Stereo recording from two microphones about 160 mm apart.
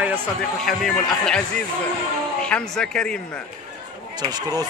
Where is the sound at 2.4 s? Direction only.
5° left (ahead or behind).